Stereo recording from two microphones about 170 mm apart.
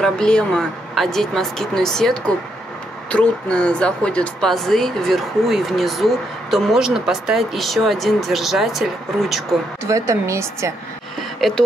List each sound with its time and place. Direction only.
0.0 s speech: 5° left (ahead or behind)
9.8 s a woman's voice: 15° right (ahead or behind)
11.4 s speech: centre (ahead or behind)